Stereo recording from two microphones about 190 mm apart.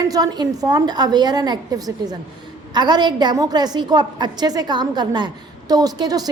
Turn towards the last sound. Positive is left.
turn(degrees=-20)  # may be behind; listen again after turning